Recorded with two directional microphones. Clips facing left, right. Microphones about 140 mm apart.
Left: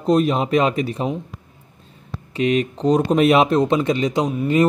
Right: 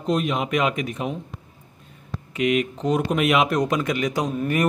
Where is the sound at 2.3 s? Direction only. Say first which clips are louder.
Left 3 dB; 35° left (ahead or behind).